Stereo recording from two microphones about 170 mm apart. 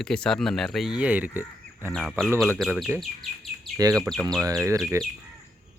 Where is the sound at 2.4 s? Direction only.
5° right (ahead or behind).